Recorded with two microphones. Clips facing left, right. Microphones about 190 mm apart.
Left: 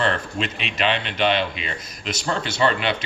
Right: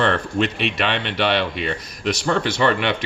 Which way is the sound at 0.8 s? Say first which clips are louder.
Left 2 dB; 60° right (ahead or behind).